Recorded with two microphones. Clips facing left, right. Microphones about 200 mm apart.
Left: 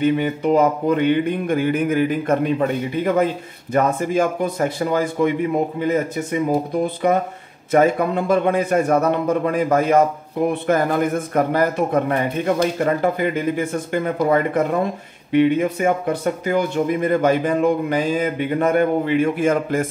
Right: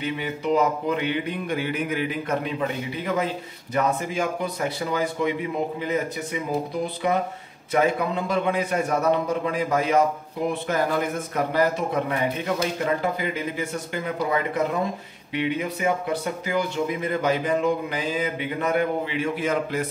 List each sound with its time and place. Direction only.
0.0 s speech: 50° left (ahead or behind)